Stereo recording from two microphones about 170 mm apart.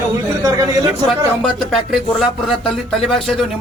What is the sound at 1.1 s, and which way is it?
Speech, centre (ahead or behind).